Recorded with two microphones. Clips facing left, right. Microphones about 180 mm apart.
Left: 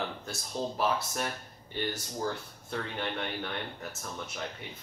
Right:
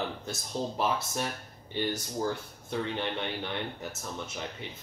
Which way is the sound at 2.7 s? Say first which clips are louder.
Right 3 dB; 15° right (ahead or behind).